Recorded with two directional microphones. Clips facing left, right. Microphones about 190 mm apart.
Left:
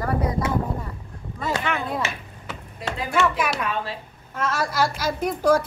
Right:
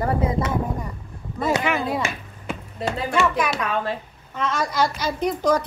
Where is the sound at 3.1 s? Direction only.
5° left (ahead or behind).